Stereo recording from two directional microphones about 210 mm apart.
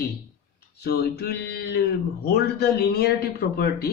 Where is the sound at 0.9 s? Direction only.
50° left (ahead or behind).